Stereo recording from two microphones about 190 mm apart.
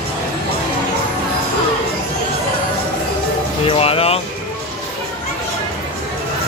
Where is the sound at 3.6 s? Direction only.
30° left (ahead or behind).